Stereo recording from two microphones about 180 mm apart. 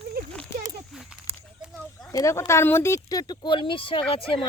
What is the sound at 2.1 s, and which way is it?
Speech, 15° left (ahead or behind).